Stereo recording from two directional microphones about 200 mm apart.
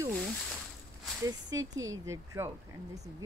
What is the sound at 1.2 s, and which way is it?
Speech, 20° right (ahead or behind).